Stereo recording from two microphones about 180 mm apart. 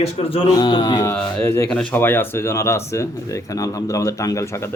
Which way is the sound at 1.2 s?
5° left (ahead or behind).